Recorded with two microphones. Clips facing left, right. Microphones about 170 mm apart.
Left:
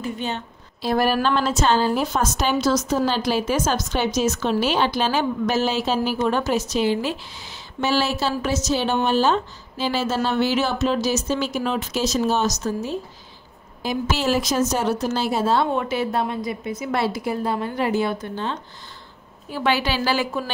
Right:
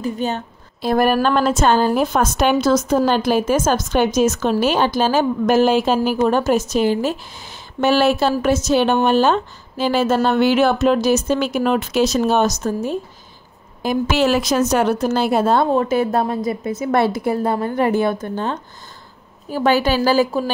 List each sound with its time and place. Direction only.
0.0 s a woman's voice: 40° right (ahead or behind)
13.8 s a woman's voice: 65° right (ahead or behind)
15.7 s a woman's voice: 40° right (ahead or behind)